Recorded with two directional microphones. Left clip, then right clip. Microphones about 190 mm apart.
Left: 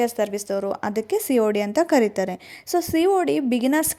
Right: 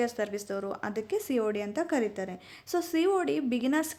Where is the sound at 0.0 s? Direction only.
25° left (ahead or behind).